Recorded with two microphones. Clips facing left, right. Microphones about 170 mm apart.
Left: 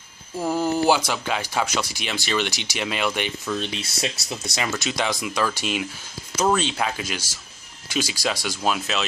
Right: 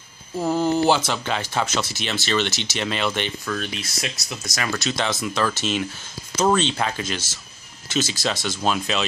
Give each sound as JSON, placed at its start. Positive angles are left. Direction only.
{"t": 0.5, "sound": "speech", "side_deg": 10}
{"t": 3.5, "sound": "speech", "side_deg": 30}
{"t": 4.7, "sound": "speech", "side_deg": 15}